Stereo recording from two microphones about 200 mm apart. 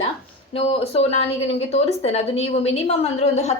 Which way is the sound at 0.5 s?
30° left (ahead or behind).